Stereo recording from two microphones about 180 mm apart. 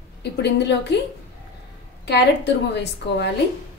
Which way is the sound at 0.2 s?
70° left (ahead or behind).